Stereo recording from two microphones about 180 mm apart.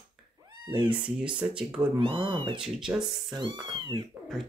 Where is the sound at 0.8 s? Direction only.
5° right (ahead or behind).